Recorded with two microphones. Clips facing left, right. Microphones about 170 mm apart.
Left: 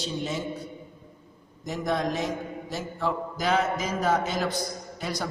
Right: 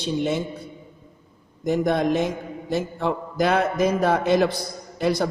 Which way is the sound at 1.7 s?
60° right (ahead or behind).